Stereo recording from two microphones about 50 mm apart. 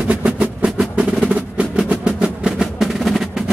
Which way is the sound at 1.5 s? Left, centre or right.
Right.